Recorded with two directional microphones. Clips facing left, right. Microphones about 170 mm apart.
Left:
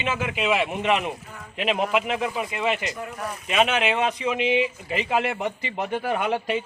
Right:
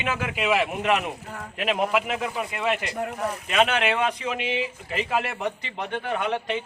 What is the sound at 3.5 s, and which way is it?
Speech, 5° left (ahead or behind).